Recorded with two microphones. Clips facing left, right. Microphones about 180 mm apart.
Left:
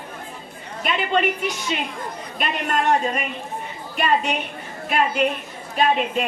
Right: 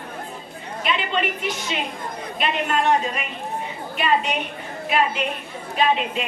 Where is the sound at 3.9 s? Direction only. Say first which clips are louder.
Left 1 dB; 45° left (ahead or behind).